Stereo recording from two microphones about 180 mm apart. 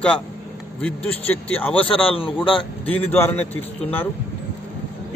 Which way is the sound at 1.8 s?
30° left (ahead or behind).